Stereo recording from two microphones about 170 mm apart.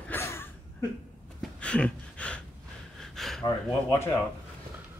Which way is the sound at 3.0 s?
Centre (ahead or behind).